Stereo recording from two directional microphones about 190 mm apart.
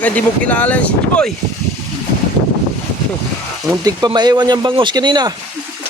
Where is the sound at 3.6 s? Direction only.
20° right (ahead or behind).